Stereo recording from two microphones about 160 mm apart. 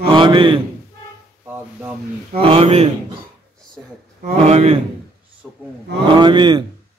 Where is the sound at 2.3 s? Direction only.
35° right (ahead or behind).